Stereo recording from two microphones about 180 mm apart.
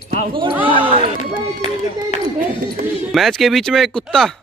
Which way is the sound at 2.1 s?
40° left (ahead or behind).